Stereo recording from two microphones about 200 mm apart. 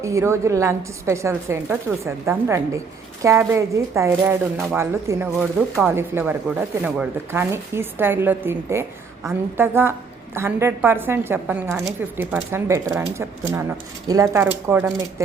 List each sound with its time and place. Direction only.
0.0 s a woman's voice: 15° right (ahead or behind)